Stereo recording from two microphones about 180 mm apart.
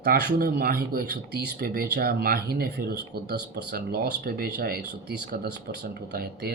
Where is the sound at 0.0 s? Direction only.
55° right (ahead or behind).